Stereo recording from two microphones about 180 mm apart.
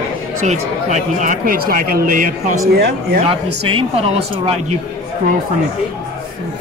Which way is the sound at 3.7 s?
30° right (ahead or behind).